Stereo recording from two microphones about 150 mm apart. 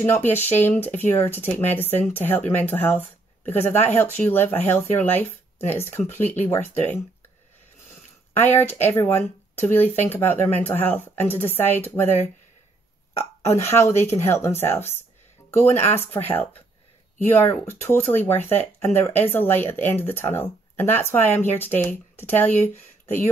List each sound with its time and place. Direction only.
0.0 s speech: 15° left (ahead or behind)
8.3 s speech: 15° left (ahead or behind)
13.2 s speech: 20° left (ahead or behind)